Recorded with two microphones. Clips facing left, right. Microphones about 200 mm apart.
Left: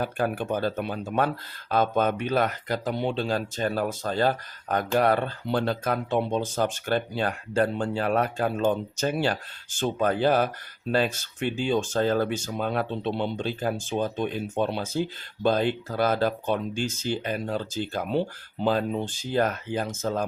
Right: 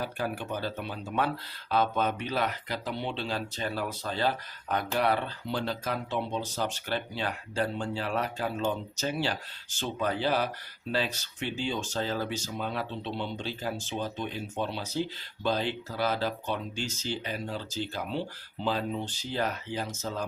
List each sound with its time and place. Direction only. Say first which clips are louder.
0.0 s speech: left 6 dB; 50° left (ahead or behind)